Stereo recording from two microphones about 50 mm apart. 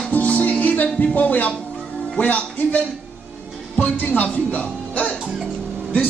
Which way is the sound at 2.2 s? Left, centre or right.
Left.